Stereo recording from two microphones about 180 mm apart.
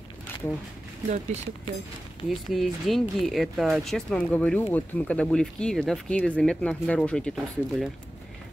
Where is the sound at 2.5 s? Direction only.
Centre (ahead or behind).